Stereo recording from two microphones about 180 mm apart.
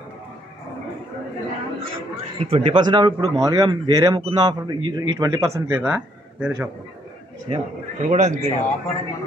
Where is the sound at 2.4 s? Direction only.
30° right (ahead or behind); by 6.7 s 10° right (ahead or behind).